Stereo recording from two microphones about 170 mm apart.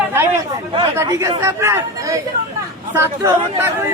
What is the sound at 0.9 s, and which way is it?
Speech, 20° right (ahead or behind).